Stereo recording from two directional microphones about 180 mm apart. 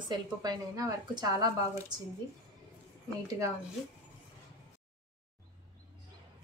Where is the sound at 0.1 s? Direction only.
20° right (ahead or behind).